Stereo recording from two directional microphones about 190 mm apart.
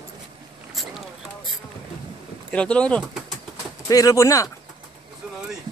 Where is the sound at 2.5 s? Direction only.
5° left (ahead or behind).